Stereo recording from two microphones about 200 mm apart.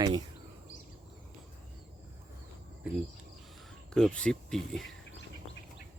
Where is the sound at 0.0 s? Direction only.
20° right (ahead or behind).